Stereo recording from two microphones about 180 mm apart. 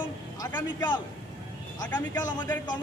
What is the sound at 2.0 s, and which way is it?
Speech, 20° left (ahead or behind).